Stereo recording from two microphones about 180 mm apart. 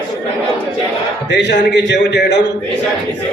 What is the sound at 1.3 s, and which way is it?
A man's voice, 75° left (ahead or behind).